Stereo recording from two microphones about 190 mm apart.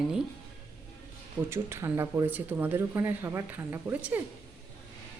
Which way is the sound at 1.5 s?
15° right (ahead or behind).